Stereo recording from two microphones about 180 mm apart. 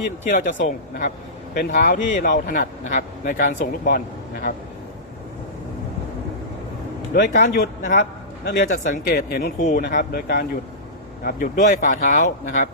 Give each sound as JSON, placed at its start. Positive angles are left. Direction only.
{"t": 0.3, "sound": "a man's voice", "side_deg": 50}
{"t": 1.5, "sound": "a man's voice", "side_deg": 50}
{"t": 7.1, "sound": "a man's voice", "side_deg": 50}
{"t": 9.0, "sound": "speech", "side_deg": 55}
{"t": 11.2, "sound": "a man's voice", "side_deg": 50}